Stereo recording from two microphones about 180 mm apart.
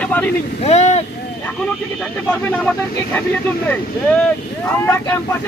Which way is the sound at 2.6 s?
10° left (ahead or behind).